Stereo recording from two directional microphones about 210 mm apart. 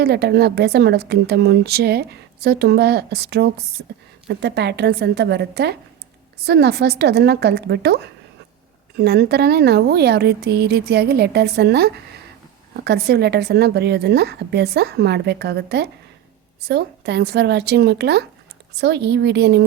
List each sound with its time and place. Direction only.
0.0 s speech: 50° right (ahead or behind)